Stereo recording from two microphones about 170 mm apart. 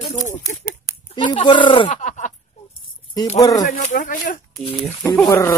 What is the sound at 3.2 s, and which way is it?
Speech, 25° left (ahead or behind).